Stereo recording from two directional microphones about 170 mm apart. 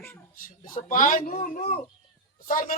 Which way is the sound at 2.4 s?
55° left (ahead or behind).